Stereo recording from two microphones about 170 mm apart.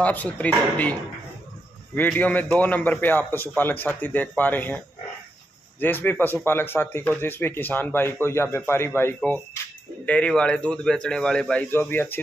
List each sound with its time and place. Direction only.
0.0 s speech: 10° left (ahead or behind)
2.0 s a man's voice: 10° left (ahead or behind)